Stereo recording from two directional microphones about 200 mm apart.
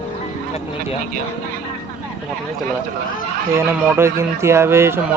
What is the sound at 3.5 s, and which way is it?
Speech, 10° right (ahead or behind).